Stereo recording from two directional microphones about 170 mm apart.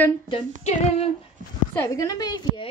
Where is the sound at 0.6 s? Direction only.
40° left (ahead or behind).